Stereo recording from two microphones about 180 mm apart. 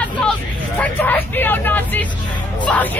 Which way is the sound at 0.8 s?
10° left (ahead or behind).